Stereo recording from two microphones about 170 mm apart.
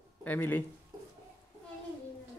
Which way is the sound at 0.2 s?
10° left (ahead or behind).